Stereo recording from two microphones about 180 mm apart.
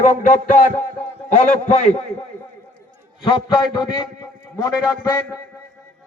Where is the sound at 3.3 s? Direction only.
25° left (ahead or behind).